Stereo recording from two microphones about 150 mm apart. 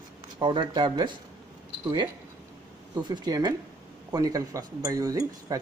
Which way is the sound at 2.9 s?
30° right (ahead or behind).